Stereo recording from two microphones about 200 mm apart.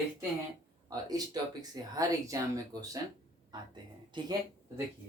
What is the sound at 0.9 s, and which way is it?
Speech, 20° right (ahead or behind).